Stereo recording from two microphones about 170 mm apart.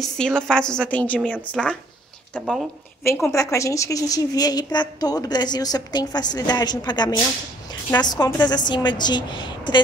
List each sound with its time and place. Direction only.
0.0 s a woman's voice: 5° left (ahead or behind)
3.0 s a woman's voice: 15° left (ahead or behind)